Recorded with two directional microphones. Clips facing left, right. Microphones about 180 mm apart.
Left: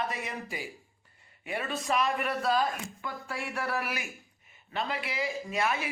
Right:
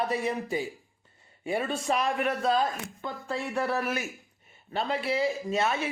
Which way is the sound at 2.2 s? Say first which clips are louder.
Right 2 dB; 5° left (ahead or behind).